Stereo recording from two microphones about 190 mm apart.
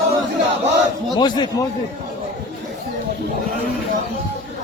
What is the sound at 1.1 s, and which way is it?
Speech, 20° left (ahead or behind).